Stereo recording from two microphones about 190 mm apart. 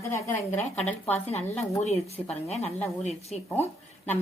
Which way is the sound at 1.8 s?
35° left (ahead or behind).